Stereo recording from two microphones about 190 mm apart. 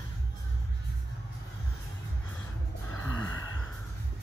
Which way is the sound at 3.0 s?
10° left (ahead or behind).